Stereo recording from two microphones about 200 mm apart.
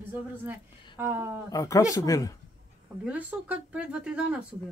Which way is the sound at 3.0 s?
5° right (ahead or behind).